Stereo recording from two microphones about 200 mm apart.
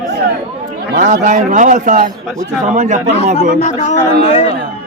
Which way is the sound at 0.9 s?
40° right (ahead or behind).